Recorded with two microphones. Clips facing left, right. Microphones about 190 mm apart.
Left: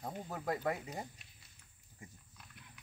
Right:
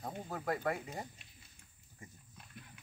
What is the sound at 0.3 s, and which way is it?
Speech, 15° left (ahead or behind).